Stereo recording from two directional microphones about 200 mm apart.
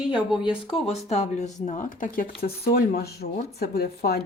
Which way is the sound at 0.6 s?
30° left (ahead or behind).